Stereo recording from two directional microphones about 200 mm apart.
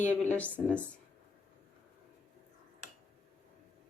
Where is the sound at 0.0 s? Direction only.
5° left (ahead or behind).